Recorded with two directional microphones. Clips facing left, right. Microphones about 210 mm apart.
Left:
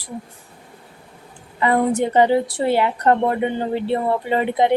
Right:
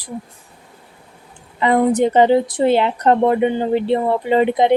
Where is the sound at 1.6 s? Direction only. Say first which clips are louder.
Right 3 dB; 20° right (ahead or behind).